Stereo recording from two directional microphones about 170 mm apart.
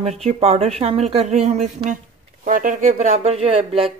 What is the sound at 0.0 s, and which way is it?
A woman's voice, 40° right (ahead or behind).